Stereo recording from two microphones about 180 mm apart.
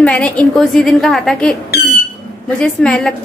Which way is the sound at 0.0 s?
5° left (ahead or behind).